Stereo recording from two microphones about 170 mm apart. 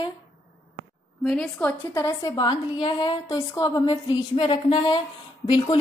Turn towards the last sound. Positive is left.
turn(degrees=25)  # may be behind; listen again after turning